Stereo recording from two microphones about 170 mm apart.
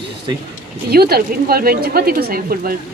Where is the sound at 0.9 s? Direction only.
65° right (ahead or behind).